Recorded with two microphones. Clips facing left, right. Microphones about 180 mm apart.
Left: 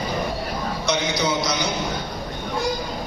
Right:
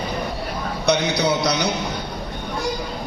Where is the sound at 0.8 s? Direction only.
65° right (ahead or behind).